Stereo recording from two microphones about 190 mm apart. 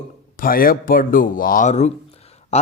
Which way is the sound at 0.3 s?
50° left (ahead or behind).